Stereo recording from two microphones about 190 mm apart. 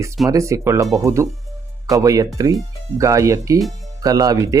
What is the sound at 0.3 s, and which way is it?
Speech, 15° right (ahead or behind).